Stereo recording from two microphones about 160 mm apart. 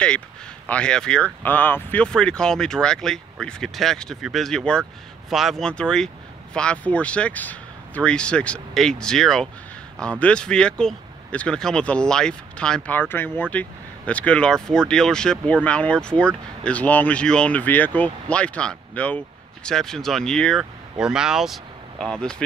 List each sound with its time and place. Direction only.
0.7 s speech: 5° left (ahead or behind)